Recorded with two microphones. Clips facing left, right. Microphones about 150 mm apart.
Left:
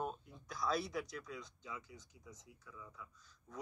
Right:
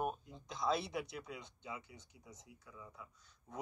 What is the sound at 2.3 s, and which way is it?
Speech, 30° right (ahead or behind).